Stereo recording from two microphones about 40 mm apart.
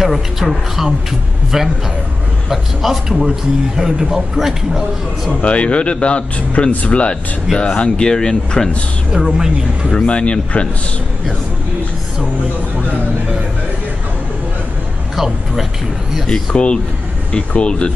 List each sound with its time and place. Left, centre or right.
0.0 s a man's voice: centre
2.5 s a man's voice: centre
5.3 s a man's voice: left
9.1 s a man's voice: centre
10.0 s speech: left
15.1 s speech: centre
16.3 s speech: left